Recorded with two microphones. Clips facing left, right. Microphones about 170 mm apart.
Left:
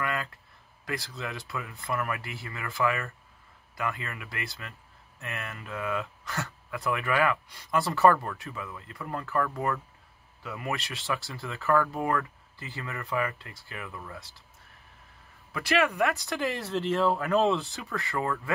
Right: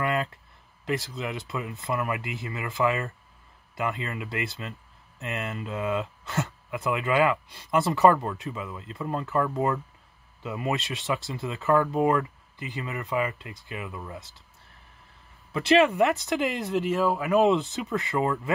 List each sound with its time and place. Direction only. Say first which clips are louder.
0.0 s a sound: right 5 dB; 20° right (ahead or behind)
0.8 s speech: right 5 dB; 20° right (ahead or behind)
15.5 s speech: right 6 dB; 20° right (ahead or behind)